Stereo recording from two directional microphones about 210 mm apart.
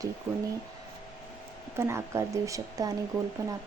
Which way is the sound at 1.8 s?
15° right (ahead or behind).